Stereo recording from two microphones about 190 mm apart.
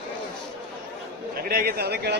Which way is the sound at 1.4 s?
55° right (ahead or behind).